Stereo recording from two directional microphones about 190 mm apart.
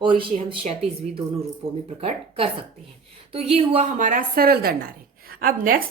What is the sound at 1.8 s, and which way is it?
A woman's voice, 30° right (ahead or behind).